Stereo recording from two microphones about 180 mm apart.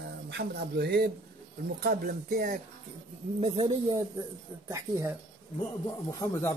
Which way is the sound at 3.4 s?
30° right (ahead or behind).